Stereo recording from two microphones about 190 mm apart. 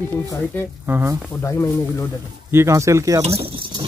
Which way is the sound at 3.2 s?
30° right (ahead or behind).